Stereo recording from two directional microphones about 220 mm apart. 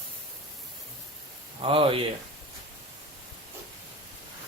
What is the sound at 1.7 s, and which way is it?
Speech, 25° right (ahead or behind).